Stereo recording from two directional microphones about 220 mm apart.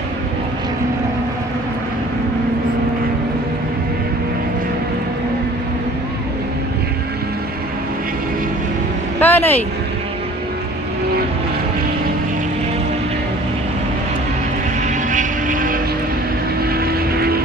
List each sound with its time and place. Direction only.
9.2 s vehicle: 10° left (ahead or behind)
15.0 s vehicle: 35° right (ahead or behind)